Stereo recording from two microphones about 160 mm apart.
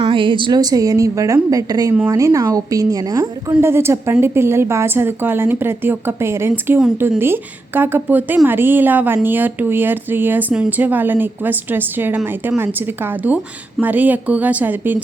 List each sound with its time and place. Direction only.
0.0 s a woman's voice: 30° right (ahead or behind); by 6.7 s 15° right (ahead or behind)
6.7 s speech: 5° right (ahead or behind)